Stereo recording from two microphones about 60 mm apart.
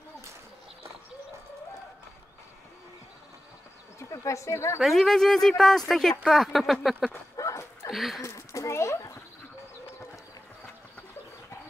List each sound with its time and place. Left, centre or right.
4.1 s speech: left
4.7 s speech: centre
7.3 s dog: left
7.9 s speech: centre
8.2 s a sound: left